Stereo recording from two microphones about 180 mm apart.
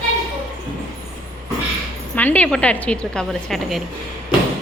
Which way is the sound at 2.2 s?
10° left (ahead or behind).